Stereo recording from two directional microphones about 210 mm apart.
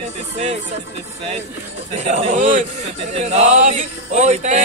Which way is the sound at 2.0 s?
35° right (ahead or behind).